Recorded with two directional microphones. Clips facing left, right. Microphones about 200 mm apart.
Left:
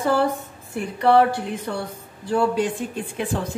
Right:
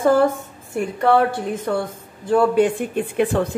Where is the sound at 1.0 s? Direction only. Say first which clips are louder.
Left 1 dB; 50° right (ahead or behind).